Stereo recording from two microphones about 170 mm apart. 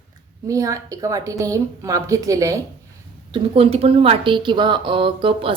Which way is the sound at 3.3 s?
35° right (ahead or behind).